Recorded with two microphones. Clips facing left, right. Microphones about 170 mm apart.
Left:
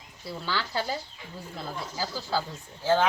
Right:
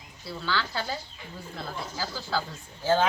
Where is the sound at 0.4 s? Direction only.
15° left (ahead or behind).